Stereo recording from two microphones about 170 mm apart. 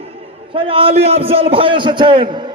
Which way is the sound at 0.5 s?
30° right (ahead or behind).